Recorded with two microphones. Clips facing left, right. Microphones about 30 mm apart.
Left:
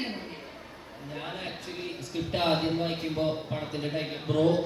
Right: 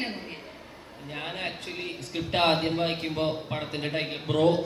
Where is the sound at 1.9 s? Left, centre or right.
Right.